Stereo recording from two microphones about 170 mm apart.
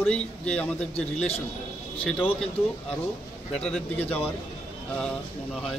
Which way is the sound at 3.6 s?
5° left (ahead or behind).